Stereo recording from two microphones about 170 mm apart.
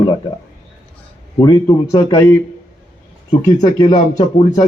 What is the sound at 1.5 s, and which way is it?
Speech, 25° left (ahead or behind).